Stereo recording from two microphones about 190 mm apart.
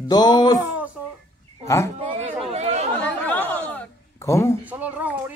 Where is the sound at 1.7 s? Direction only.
15° left (ahead or behind).